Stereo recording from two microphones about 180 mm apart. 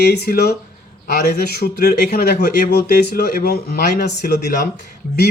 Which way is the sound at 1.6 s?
60° left (ahead or behind).